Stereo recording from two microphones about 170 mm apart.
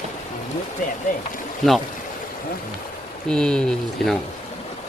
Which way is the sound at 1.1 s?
50° left (ahead or behind).